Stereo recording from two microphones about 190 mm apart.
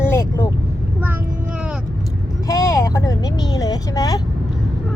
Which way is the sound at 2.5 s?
15° left (ahead or behind).